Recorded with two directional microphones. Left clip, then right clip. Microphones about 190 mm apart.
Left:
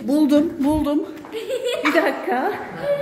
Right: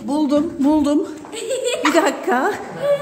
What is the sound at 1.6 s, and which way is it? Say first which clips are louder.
Chuckle: right 2 dB; 70° right (ahead or behind).